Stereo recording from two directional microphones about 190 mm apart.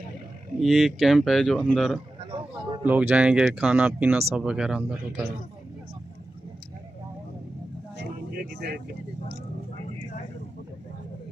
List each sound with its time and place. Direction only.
0.6 s speech: centre (ahead or behind)
2.1 s a sound: 25° right (ahead or behind)
2.8 s speech: 5° right (ahead or behind)
8.0 s vehicle: 60° right (ahead or behind)